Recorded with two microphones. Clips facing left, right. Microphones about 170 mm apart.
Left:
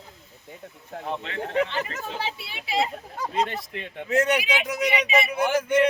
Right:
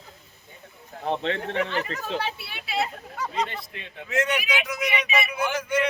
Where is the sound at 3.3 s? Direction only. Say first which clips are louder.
Left 4 dB; 50° left (ahead or behind).